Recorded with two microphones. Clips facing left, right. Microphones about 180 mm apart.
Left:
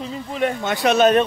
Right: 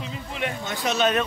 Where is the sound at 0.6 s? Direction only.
75° left (ahead or behind).